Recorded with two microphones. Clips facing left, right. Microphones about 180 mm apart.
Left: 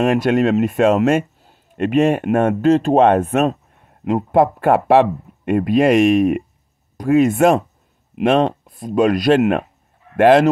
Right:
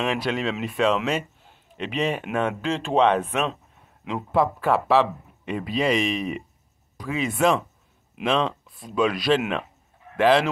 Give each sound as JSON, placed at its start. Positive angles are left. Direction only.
{"t": 0.0, "sound": "a man's voice", "side_deg": 50}